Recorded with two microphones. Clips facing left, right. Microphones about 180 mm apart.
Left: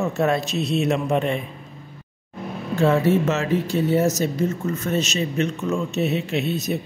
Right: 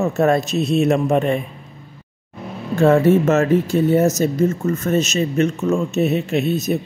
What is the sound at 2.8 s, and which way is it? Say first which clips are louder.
Speech: right 5 dB; 50° right (ahead or behind).